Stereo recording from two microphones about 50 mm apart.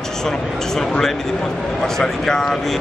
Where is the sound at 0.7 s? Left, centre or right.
Centre.